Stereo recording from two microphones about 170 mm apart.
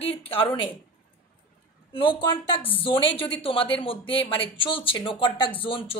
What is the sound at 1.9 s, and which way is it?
A woman's voice, 30° left (ahead or behind).